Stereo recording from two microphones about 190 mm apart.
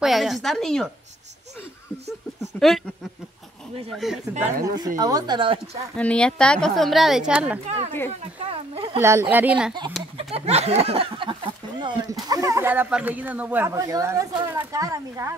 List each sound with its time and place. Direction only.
0.0 s a woman's voice: centre (ahead or behind)
3.9 s a woman's voice: centre (ahead or behind)
4.4 s speech: 45° right (ahead or behind)
4.8 s speech: 20° right (ahead or behind)
5.9 s a woman's voice: 5° left (ahead or behind)
7.6 s speech: 35° right (ahead or behind)
9.0 s speech: 10° right (ahead or behind)
10.1 s speech: 35° right (ahead or behind); by 15.3 s 15° right (ahead or behind)